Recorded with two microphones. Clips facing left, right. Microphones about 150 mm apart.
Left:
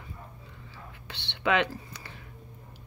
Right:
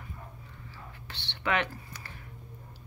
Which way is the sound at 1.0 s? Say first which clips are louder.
Left 4 dB; 15° left (ahead or behind).